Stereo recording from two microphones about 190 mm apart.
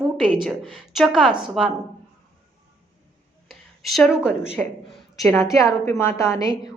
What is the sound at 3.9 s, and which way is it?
A woman's voice, centre (ahead or behind).